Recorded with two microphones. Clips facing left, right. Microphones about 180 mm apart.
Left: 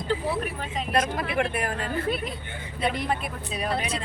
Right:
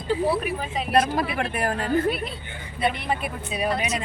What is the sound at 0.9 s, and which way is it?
Speech, 35° right (ahead or behind).